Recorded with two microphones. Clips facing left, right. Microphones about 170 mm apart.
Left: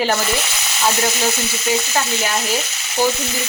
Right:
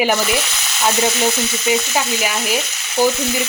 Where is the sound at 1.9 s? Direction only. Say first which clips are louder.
Right 1 dB; 10° right (ahead or behind).